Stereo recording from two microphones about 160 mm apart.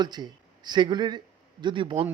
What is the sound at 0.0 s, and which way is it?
Speech, 25° right (ahead or behind).